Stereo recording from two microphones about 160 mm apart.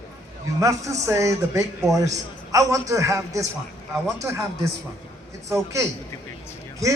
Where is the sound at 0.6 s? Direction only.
20° right (ahead or behind).